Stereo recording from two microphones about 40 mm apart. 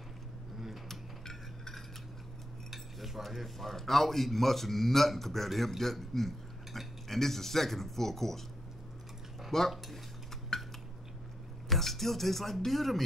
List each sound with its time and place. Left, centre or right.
0.8 s cutlery: centre
2.7 s a man's voice: centre
9.5 s a man's voice: centre
10.5 s dishes: centre
11.7 s speech: centre